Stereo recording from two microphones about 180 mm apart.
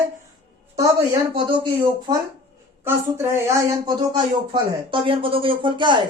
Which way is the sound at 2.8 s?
15° right (ahead or behind).